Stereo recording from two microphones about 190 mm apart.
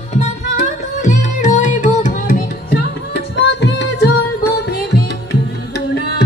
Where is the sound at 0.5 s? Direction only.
40° left (ahead or behind).